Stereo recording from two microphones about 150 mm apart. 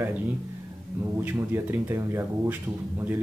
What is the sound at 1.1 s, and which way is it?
Speech, 15° right (ahead or behind).